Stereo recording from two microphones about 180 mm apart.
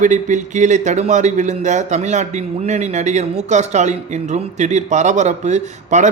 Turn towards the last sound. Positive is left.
turn(degrees=-40)  # may be behind; listen again after turning